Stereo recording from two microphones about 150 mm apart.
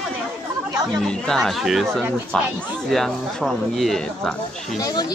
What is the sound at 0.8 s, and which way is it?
Speech, 5° left (ahead or behind).